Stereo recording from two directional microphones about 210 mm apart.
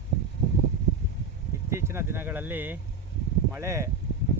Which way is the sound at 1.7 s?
10° right (ahead or behind).